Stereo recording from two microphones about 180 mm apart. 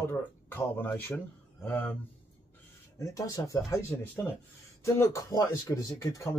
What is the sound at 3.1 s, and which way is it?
Speech, 20° left (ahead or behind).